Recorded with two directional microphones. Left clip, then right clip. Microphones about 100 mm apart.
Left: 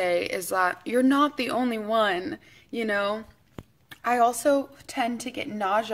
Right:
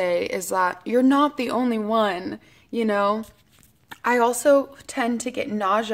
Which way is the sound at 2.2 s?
40° right (ahead or behind).